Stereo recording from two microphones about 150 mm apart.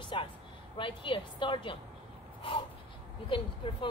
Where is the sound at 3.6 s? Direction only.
35° left (ahead or behind).